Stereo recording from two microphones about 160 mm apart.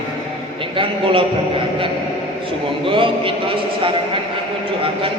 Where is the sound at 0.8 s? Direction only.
35° right (ahead or behind).